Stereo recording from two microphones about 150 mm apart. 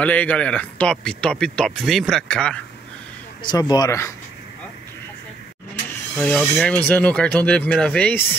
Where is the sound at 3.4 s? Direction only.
30° left (ahead or behind).